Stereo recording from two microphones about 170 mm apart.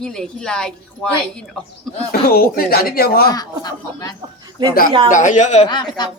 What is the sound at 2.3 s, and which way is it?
Speech, 60° left (ahead or behind).